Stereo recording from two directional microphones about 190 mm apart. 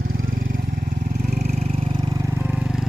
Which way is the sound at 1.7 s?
20° right (ahead or behind).